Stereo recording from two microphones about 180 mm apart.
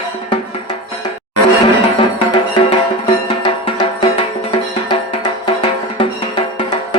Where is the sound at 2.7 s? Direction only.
30° left (ahead or behind).